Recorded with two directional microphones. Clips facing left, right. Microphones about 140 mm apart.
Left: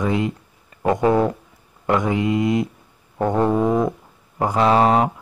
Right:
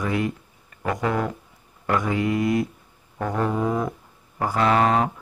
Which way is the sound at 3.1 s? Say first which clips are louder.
Left 6 dB; 25° left (ahead or behind).